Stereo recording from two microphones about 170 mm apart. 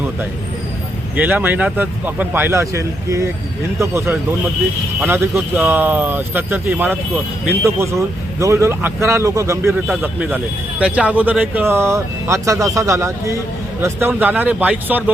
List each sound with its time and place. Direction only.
1.1 s speech: 10° right (ahead or behind)
9.8 s speech: 5° right (ahead or behind)